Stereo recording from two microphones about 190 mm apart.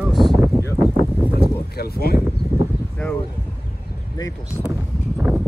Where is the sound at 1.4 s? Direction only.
55° left (ahead or behind).